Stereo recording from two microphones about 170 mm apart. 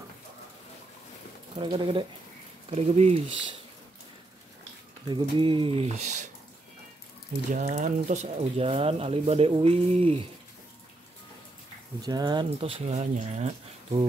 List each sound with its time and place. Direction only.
1.6 s speech: 30° right (ahead or behind)
5.1 s speech: 30° right (ahead or behind); by 6.3 s 45° right (ahead or behind)
7.5 s speech: 50° right (ahead or behind)
12.0 s speech: 25° right (ahead or behind); by 14.0 s 40° right (ahead or behind)